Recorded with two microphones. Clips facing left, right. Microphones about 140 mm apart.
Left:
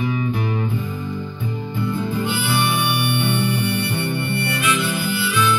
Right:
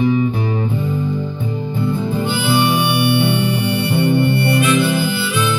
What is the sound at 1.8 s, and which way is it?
Harmonica, 30° right (ahead or behind).